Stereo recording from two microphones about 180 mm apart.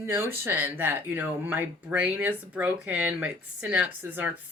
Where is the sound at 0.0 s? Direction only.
15° right (ahead or behind).